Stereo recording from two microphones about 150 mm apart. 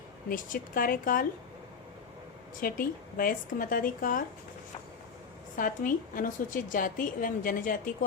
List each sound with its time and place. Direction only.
0.3 s speech: 65° left (ahead or behind)
2.6 s speech: 70° left (ahead or behind)
5.5 s a woman's voice: 65° left (ahead or behind)